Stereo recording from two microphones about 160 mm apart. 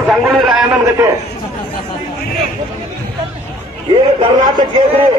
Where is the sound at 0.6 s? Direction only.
20° right (ahead or behind).